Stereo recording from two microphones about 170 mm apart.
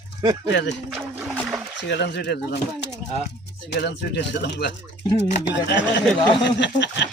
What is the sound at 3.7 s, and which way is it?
Speech, 85° left.